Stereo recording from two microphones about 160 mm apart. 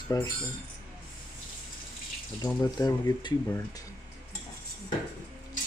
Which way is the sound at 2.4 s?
25° left (ahead or behind).